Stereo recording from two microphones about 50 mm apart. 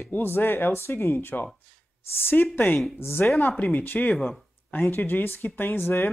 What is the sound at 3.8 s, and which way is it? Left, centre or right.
Speech, left.